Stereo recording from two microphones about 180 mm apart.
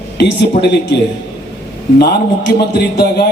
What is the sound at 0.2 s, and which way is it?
Speech, 65° left (ahead or behind).